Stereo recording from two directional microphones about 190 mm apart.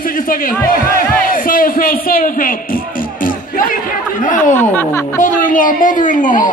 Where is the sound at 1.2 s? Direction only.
45° left (ahead or behind).